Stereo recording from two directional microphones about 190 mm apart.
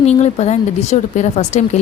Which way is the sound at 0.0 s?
35° left (ahead or behind).